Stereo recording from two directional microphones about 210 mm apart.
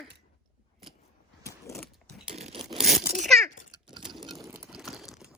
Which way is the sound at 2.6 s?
30° right (ahead or behind).